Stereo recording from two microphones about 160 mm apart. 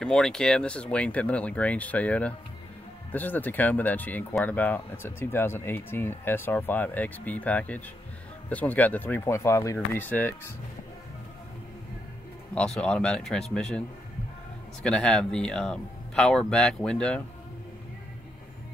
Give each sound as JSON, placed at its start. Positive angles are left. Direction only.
{"t": 0.0, "sound": "speech", "side_deg": 5}
{"t": 12.5, "sound": "speech", "side_deg": 5}